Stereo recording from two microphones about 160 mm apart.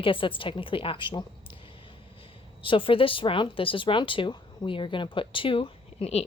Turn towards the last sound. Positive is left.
turn(degrees=40)  # may be behind; listen again after turning